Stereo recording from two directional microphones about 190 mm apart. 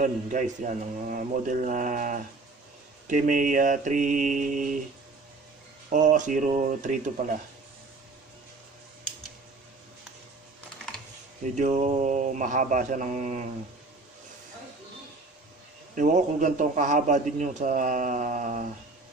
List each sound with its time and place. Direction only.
0.0 s a man's voice: 40° right (ahead or behind)
5.9 s a man's voice: 40° right (ahead or behind)
11.5 s a man's voice: 40° right (ahead or behind)
15.9 s a man's voice: 40° right (ahead or behind)